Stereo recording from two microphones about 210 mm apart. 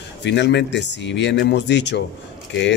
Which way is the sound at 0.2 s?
55° left (ahead or behind).